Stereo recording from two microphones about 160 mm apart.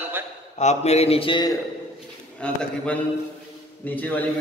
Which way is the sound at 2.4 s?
5° left (ahead or behind).